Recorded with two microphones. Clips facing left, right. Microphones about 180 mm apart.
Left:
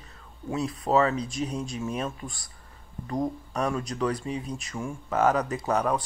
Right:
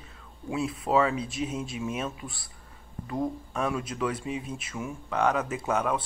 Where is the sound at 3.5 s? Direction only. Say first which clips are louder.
Left 2 dB; 5° right (ahead or behind).